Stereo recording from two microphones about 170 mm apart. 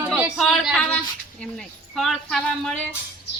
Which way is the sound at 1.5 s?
Centre (ahead or behind).